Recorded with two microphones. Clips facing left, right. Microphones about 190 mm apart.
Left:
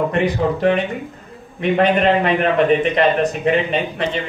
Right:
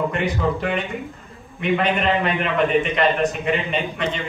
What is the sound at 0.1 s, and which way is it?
Speech, 40° left (ahead or behind).